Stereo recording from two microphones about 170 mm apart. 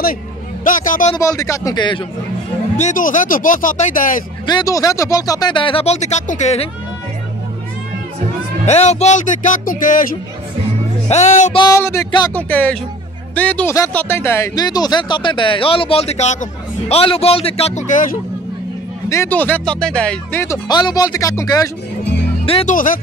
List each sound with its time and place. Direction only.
0.7 s speech: 50° left (ahead or behind)
1.1 s speech: 20° left (ahead or behind)
2.8 s speech: 50° left (ahead or behind)
4.5 s speech: 20° left (ahead or behind); by 6.7 s 40° left (ahead or behind)
8.6 s speech: 40° left (ahead or behind)
11.1 s speech: 40° left (ahead or behind)
11.5 s speech: 25° left (ahead or behind)
12.4 s a man's voice: 10° left (ahead or behind); by 18.2 s 45° left (ahead or behind)
19.0 s speech: 15° left (ahead or behind)
20.4 s speech: 25° left (ahead or behind)
22.7 s speech: 50° left (ahead or behind)